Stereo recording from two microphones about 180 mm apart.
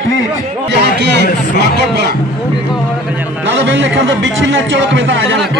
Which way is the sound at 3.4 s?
90° right.